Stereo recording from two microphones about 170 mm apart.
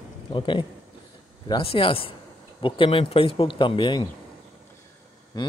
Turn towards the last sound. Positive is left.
turn(degrees=25)  # may be behind; listen again after turning